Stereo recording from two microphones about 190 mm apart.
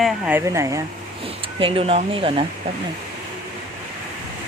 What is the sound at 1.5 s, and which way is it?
Speech, 30° right (ahead or behind).